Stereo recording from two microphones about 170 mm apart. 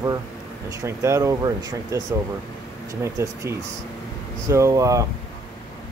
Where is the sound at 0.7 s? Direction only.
15° right (ahead or behind).